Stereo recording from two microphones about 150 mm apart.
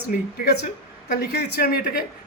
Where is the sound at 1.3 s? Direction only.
90° left.